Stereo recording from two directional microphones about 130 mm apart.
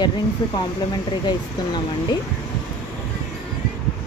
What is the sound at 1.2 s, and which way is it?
Speech, 35° left (ahead or behind).